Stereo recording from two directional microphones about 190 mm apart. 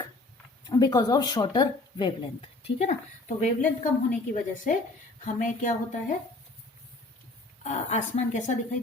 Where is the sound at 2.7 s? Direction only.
35° left (ahead or behind).